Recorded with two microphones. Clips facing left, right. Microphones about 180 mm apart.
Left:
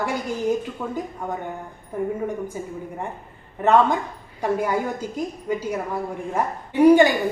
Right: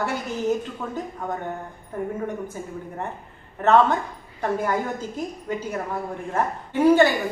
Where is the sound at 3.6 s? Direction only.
15° left (ahead or behind).